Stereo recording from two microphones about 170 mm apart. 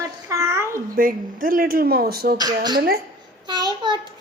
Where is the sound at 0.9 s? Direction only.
55° right (ahead or behind).